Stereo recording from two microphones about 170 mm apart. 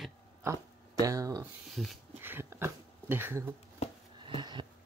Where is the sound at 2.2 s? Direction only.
15° right (ahead or behind).